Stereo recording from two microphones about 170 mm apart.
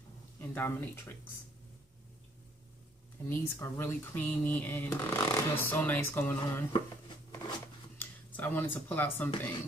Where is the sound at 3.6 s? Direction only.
15° left (ahead or behind).